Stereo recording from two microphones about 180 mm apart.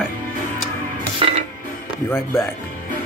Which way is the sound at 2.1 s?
15° left (ahead or behind).